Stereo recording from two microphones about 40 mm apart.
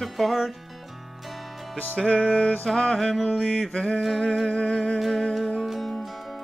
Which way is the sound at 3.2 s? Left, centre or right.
Left.